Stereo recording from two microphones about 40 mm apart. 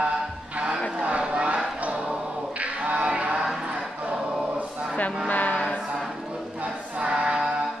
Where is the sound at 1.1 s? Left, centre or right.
Right.